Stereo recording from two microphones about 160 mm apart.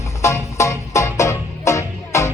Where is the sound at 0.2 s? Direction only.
20° left (ahead or behind).